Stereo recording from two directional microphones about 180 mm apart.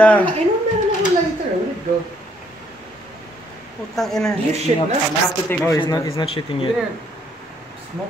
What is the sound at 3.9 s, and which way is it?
Speech, centre (ahead or behind).